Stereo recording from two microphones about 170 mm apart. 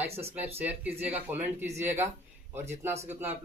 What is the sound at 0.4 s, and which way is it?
Speech, 10° right (ahead or behind).